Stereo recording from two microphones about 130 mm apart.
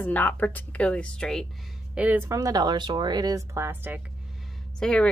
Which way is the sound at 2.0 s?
15° right (ahead or behind).